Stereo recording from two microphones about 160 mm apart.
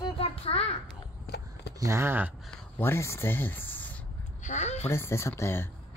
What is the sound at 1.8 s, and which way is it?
Speech, 15° right (ahead or behind).